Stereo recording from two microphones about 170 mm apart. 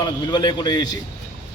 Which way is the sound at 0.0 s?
25° left (ahead or behind).